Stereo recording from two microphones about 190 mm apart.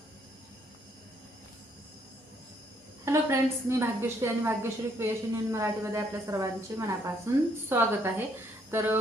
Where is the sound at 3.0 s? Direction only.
15° right (ahead or behind).